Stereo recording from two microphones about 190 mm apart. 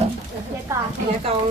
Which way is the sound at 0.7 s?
15° right (ahead or behind).